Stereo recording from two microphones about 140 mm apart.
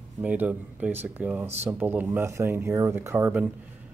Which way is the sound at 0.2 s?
10° right (ahead or behind).